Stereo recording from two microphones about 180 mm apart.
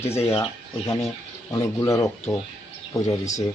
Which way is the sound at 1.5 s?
15° left (ahead or behind).